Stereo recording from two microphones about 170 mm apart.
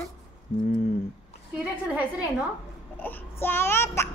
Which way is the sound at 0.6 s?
50° left (ahead or behind).